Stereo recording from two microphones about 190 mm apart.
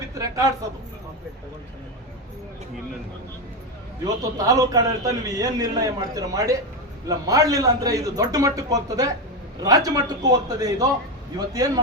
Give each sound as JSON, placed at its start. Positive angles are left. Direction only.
{"t": 0.1, "sound": "a woman's voice", "side_deg": -15}
{"t": 4.0, "sound": "a man's voice", "side_deg": -20}